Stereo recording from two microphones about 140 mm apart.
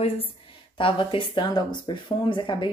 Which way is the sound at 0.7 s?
40° left (ahead or behind).